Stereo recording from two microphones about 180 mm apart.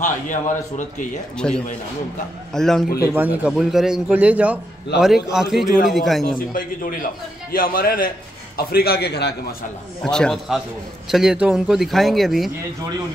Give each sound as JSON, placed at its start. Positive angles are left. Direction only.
{"t": 0.0, "sound": "a man's voice", "side_deg": 45}
{"t": 1.4, "sound": "speech", "side_deg": 5}
{"t": 3.1, "sound": "a man's voice", "side_deg": -10}
{"t": 6.2, "sound": "a man's voice", "side_deg": 50}
{"t": 10.0, "sound": "speech", "side_deg": 5}